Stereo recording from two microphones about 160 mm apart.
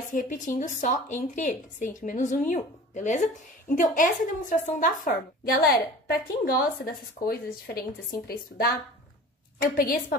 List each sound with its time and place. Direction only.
0.1 s a woman's voice: 55° left (ahead or behind)
9.8 s a woman's voice: 60° left (ahead or behind)